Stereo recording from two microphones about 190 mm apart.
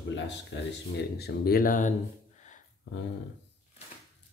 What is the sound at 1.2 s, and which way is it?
Speech, 55° left (ahead or behind).